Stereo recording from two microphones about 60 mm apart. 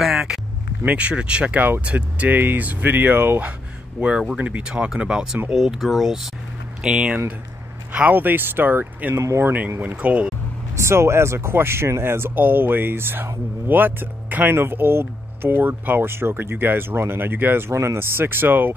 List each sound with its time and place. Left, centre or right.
0.0 s a sound: centre
0.8 s speech: right
4.4 s speech: right
7.9 s speech: right
9.1 s speech: right
9.4 s speech: right
10.8 s speech: right